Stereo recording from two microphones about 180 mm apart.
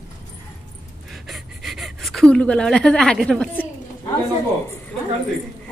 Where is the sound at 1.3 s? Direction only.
Centre (ahead or behind).